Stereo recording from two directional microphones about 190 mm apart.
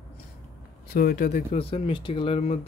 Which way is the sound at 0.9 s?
50° left (ahead or behind).